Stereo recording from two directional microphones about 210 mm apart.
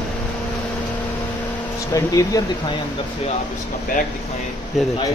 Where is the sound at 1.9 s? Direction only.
15° left (ahead or behind).